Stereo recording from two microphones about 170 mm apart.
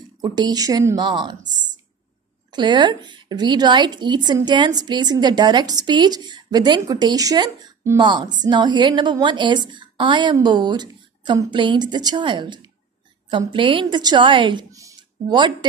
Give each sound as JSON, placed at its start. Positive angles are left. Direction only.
{"t": 0.2, "sound": "a woman's voice", "side_deg": -25}
{"t": 2.5, "sound": "a woman's voice", "side_deg": -25}